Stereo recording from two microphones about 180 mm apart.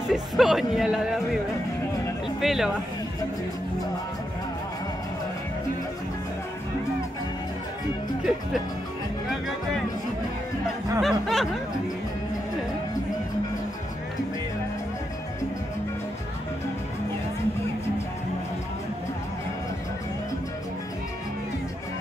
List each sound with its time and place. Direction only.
0.1 s speech: centre (ahead or behind)
2.4 s speech: centre (ahead or behind)
11.0 s speech: centre (ahead or behind)